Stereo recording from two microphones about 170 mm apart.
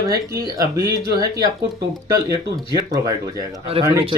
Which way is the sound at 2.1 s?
20° right (ahead or behind).